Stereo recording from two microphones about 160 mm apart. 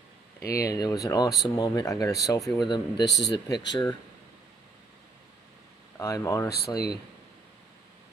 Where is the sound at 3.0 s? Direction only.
90° left.